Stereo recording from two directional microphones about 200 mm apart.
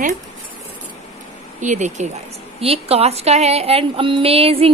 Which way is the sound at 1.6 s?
35° right (ahead or behind).